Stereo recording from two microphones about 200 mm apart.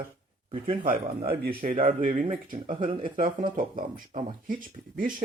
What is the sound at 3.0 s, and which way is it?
Speech, 45° right (ahead or behind).